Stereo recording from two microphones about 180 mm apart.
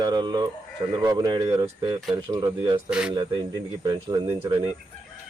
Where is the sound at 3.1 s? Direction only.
25° right (ahead or behind).